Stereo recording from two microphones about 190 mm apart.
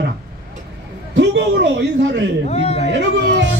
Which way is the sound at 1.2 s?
65° right (ahead or behind).